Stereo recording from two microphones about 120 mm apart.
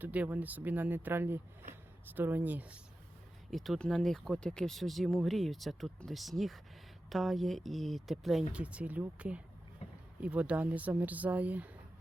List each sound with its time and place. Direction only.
0.0 s speech: 15° right (ahead or behind)
3.5 s speech: centre (ahead or behind)
9.8 s a sound: 65° left (ahead or behind)
10.2 s speech: 10° right (ahead or behind)